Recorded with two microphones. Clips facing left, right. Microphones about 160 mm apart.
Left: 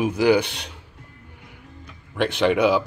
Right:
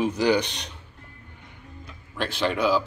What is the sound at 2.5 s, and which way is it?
Speech, 65° left (ahead or behind).